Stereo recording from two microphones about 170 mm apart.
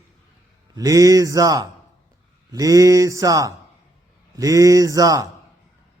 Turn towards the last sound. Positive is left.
turn(degrees=-20)  # may be behind; listen again after turning